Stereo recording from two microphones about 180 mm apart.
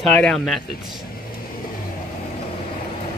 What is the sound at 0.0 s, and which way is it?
Speech, 5° left (ahead or behind).